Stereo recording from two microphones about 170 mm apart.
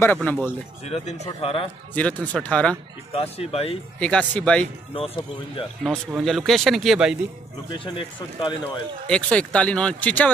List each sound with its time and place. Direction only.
0.0 s speech: 10° left (ahead or behind)
0.8 s speech: 40° left (ahead or behind)
2.0 s speech: 10° left (ahead or behind)
3.2 s speech: 35° left (ahead or behind)
4.0 s speech: 5° left (ahead or behind)
4.9 s speech: 35° left (ahead or behind)
6.2 s speech: centre (ahead or behind)
7.7 s speech: 30° left (ahead or behind)
9.1 s speech: 5° left (ahead or behind)